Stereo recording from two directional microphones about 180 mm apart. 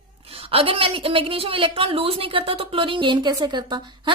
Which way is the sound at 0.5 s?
30° right (ahead or behind).